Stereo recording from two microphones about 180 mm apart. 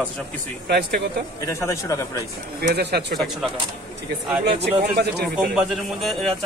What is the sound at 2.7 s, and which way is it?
Speech, 70° right (ahead or behind).